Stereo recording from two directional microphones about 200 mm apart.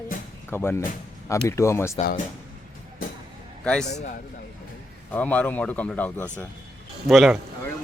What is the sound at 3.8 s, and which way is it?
Speech, 35° left (ahead or behind).